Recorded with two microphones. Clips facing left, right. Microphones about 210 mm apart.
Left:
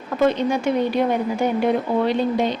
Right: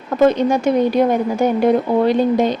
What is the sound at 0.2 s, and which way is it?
A woman's voice, 45° right (ahead or behind).